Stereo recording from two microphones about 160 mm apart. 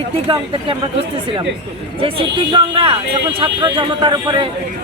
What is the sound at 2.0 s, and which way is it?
Speech, 35° right (ahead or behind).